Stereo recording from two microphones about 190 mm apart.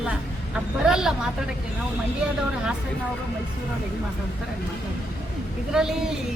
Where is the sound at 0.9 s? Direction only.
5° right (ahead or behind).